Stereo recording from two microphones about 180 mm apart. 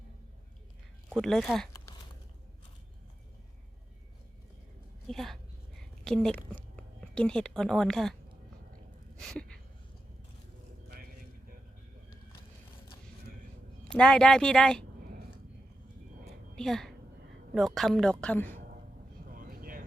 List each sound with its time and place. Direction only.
1.1 s a woman's voice: 5° left (ahead or behind)
1.7 s a sound: 20° left (ahead or behind)
5.0 s a woman's voice: centre (ahead or behind)
9.1 s a sound: 5° left (ahead or behind)
13.9 s a woman's voice: 5° left (ahead or behind)
16.6 s a woman's voice: centre (ahead or behind)
19.3 s vehicle: 50° right (ahead or behind)